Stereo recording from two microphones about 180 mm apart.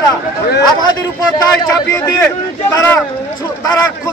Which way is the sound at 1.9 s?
20° left (ahead or behind).